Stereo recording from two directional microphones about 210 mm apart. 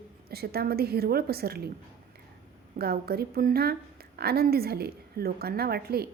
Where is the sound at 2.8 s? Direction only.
45° right (ahead or behind).